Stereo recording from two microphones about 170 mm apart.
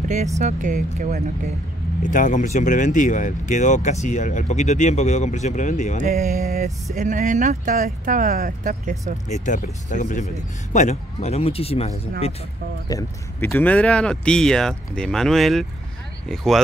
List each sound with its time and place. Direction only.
0.4 s speech: 45° right (ahead or behind)
2.0 s speech: 50° left (ahead or behind)
5.9 s speech: 45° right (ahead or behind)
6.5 s speech: 55° right (ahead or behind)
9.3 s speech: 45° left (ahead or behind)
12.8 s speech: 15° left (ahead or behind); by 16.6 s centre (ahead or behind)